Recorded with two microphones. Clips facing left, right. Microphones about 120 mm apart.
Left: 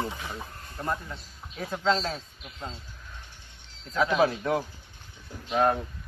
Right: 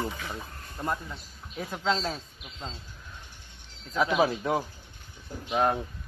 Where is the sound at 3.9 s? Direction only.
15° right (ahead or behind).